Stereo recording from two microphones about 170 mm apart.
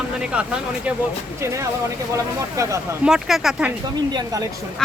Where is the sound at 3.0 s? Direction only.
5° right (ahead or behind).